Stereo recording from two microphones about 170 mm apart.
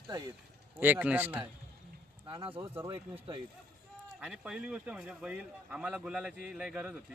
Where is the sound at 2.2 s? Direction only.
30° right (ahead or behind).